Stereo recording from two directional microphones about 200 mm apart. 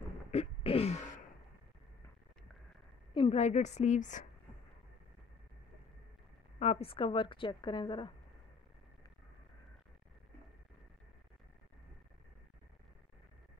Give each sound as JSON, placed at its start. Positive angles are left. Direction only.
{"t": 0.3, "sound": "a sound", "side_deg": 30}
{"t": 3.2, "sound": "a woman's voice", "side_deg": 30}
{"t": 6.6, "sound": "a woman's voice", "side_deg": 30}